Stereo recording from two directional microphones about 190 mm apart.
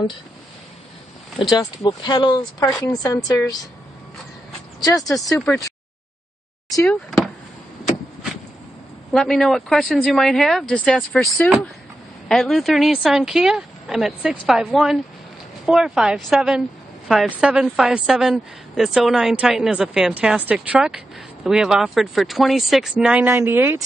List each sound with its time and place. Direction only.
1.5 s speech: 20° left (ahead or behind)
4.8 s speech: 20° left (ahead or behind)
5.2 s a woman's voice: 5° left (ahead or behind)
6.8 s a woman's voice: 5° left (ahead or behind)
9.1 s a woman's voice: centre (ahead or behind)